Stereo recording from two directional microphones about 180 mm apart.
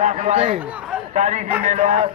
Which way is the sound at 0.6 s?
5° right (ahead or behind).